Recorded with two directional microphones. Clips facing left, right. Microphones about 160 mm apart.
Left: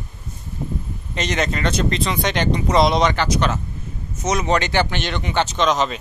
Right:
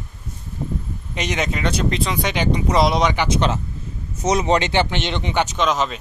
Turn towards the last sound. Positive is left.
turn(degrees=-5)  # may be behind; listen again after turning